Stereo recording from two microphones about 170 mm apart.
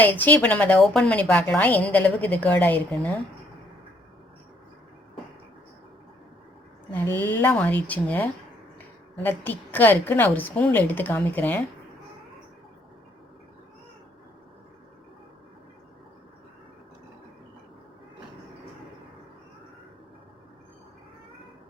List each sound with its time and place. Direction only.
0.0 s a woman's voice: 10° left (ahead or behind)
6.9 s a woman's voice: 10° left (ahead or behind)